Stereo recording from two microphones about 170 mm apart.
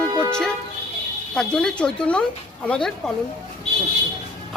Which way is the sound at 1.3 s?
5° left (ahead or behind).